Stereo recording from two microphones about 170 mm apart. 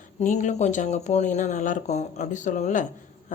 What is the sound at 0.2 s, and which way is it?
A woman's voice, 45° left (ahead or behind).